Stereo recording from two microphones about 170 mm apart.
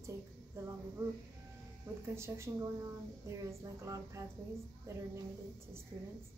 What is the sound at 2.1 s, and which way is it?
Speech, 15° right (ahead or behind).